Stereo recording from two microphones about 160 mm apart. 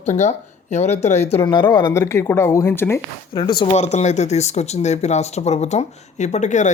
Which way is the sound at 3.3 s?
30° left (ahead or behind).